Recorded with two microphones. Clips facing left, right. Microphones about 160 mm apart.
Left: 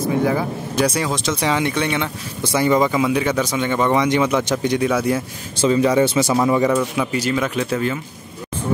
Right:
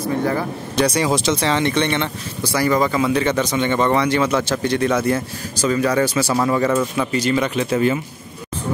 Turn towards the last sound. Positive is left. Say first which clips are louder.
# right 2 dB
turn(degrees=0)  # may be behind; listen again after turning